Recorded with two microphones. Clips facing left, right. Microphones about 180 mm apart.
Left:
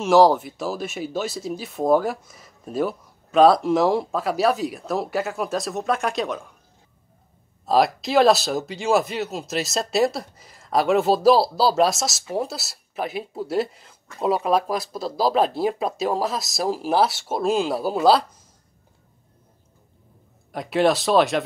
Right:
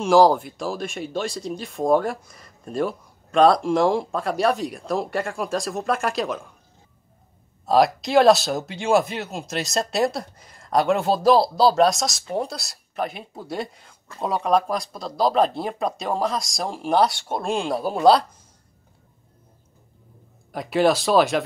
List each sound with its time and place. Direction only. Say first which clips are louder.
0.0 s speech: even; centre (ahead or behind)
7.6 s speech: right 1 dB; centre (ahead or behind)
20.5 s speech: even; centre (ahead or behind)